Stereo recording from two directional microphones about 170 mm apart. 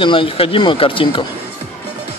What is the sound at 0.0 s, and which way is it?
Speech, 30° left (ahead or behind).